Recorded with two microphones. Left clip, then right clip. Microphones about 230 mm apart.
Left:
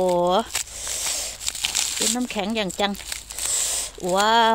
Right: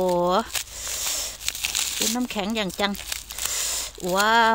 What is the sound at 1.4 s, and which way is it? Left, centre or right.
Crumpling, centre.